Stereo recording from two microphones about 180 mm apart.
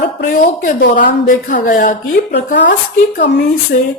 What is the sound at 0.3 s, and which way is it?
Speech, 45° left (ahead or behind).